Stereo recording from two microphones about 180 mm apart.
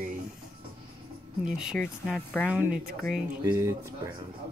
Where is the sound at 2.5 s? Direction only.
10° right (ahead or behind).